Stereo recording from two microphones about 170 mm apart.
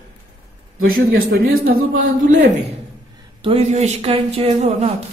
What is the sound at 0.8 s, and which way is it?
A man's voice, 60° right (ahead or behind).